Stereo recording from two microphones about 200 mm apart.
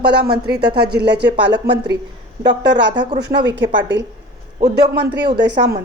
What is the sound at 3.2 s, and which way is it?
A woman's voice, 55° right (ahead or behind).